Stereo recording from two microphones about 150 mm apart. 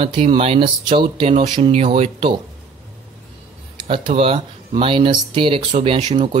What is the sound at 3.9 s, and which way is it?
Speech, 35° right (ahead or behind).